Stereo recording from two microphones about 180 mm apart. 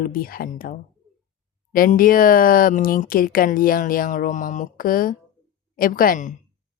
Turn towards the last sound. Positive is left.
turn(degrees=45)  # may be behind; listen again after turning